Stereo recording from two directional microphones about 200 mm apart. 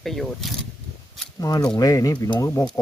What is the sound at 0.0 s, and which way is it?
Speech, centre (ahead or behind).